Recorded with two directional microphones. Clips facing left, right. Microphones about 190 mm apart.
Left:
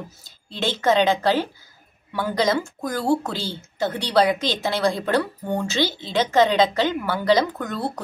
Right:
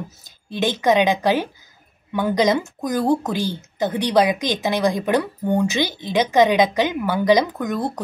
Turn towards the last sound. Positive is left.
turn(degrees=-15)  # may be behind; listen again after turning